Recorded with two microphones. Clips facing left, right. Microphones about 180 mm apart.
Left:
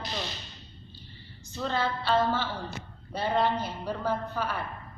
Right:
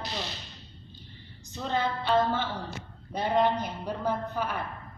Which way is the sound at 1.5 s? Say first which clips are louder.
Even; 15° right (ahead or behind).